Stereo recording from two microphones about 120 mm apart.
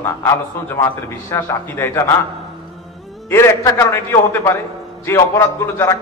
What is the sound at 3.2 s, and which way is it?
A man's voice, 25° left (ahead or behind).